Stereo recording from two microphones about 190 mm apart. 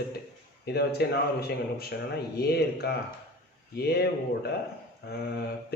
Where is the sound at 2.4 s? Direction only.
55° left (ahead or behind).